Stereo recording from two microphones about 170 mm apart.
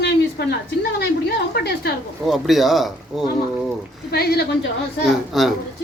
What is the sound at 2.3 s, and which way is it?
Speech, centre (ahead or behind).